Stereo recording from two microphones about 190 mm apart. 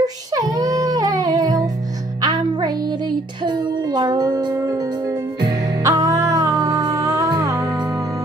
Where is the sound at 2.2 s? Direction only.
20° right (ahead or behind).